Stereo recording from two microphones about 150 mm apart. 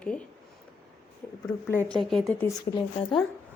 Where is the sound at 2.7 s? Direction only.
30° left (ahead or behind).